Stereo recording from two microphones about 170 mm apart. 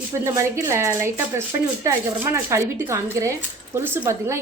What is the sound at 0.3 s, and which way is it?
A woman's voice, 15° right (ahead or behind).